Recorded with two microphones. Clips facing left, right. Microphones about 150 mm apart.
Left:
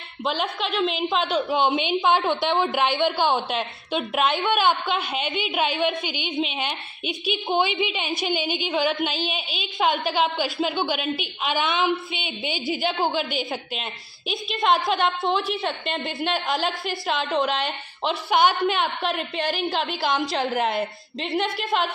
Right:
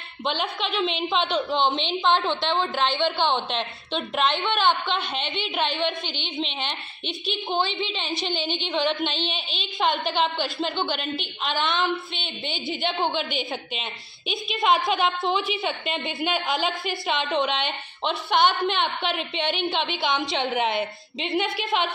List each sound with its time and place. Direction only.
0.2 s a woman's voice: centre (ahead or behind)
7.4 s a woman's voice: 15° left (ahead or behind); by 21.8 s centre (ahead or behind)